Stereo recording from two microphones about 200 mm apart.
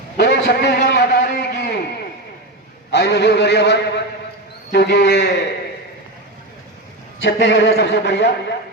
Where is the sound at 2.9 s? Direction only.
60° left (ahead or behind).